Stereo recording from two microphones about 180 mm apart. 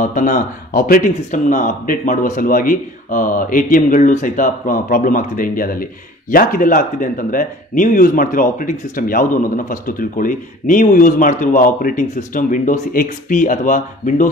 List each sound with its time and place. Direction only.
0.0 s speech: 45° left (ahead or behind)